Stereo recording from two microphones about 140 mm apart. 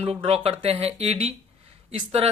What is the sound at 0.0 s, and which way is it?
Speech, 45° right (ahead or behind).